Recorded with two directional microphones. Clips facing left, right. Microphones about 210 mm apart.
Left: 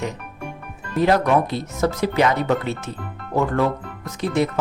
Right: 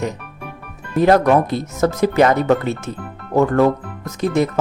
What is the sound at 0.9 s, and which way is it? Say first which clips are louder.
Speech: right 4 dB; 50° right (ahead or behind).